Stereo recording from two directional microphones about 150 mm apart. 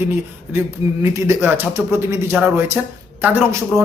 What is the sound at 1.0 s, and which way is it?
A man's voice, 20° right (ahead or behind).